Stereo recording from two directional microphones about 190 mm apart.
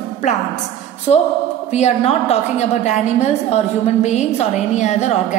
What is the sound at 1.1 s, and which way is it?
A woman's voice, 30° left (ahead or behind).